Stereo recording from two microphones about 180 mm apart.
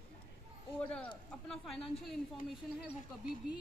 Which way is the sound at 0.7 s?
5° left (ahead or behind).